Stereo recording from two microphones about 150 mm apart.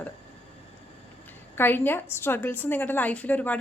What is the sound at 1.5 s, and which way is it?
A woman's voice, 15° left (ahead or behind).